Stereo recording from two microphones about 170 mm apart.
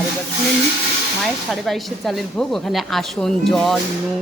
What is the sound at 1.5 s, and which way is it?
Speech, centre (ahead or behind).